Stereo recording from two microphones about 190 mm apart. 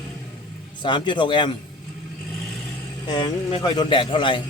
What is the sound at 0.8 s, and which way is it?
Speech, 25° left (ahead or behind).